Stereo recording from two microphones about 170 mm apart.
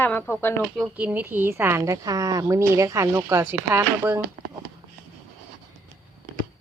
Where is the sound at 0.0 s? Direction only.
10° left (ahead or behind).